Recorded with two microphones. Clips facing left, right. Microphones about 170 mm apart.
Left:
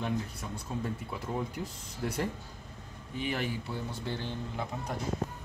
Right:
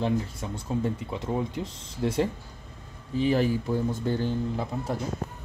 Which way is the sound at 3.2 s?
35° right (ahead or behind).